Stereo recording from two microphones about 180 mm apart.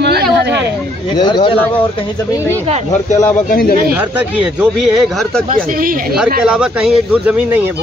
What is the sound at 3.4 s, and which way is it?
Speech, 55° left (ahead or behind).